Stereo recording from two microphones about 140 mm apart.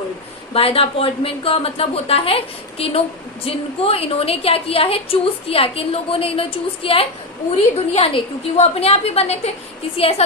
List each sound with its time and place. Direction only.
0.5 s a woman's voice: 45° left (ahead or behind)